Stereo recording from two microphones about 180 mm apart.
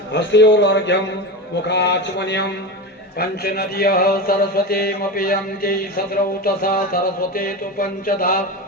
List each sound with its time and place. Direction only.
0.1 s a man's voice: 75° left (ahead or behind)
3.2 s mantra: 60° left (ahead or behind)